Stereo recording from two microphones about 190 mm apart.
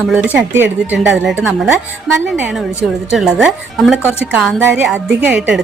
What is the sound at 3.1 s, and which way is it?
A woman's voice, centre (ahead or behind).